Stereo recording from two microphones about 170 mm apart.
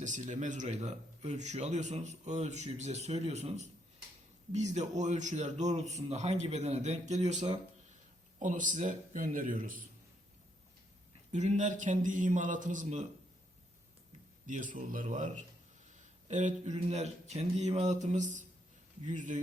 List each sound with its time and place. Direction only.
0.0 s speech: 45° right (ahead or behind)
11.3 s speech: 45° right (ahead or behind)
14.4 s speech: 50° right (ahead or behind)